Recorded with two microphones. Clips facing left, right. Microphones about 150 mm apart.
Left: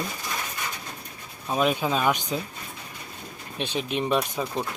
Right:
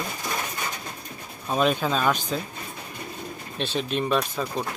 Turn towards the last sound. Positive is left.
turn(degrees=15)  # may be behind; listen again after turning